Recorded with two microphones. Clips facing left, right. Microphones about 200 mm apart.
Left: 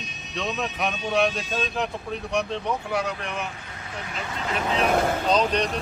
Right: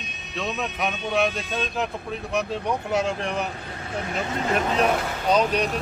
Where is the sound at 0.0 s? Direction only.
60° right (ahead or behind).